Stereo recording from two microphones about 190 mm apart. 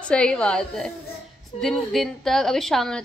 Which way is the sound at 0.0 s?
5° left (ahead or behind).